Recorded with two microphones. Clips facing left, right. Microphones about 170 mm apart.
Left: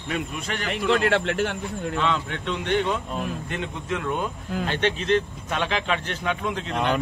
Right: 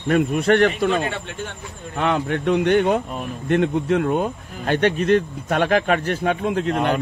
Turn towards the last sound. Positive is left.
turn(degrees=-40)  # may be behind; listen again after turning